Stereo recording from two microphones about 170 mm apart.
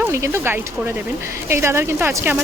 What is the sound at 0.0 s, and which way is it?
Speech, 15° right (ahead or behind).